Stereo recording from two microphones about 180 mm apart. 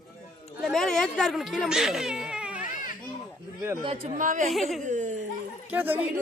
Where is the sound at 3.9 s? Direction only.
50° right (ahead or behind).